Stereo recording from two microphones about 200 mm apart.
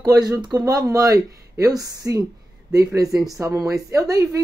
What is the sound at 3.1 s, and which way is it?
Speech, centre (ahead or behind).